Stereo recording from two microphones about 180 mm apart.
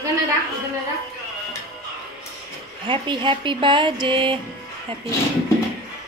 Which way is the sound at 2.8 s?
25° right (ahead or behind).